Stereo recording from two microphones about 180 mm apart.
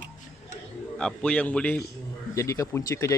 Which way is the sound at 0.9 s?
5° left (ahead or behind).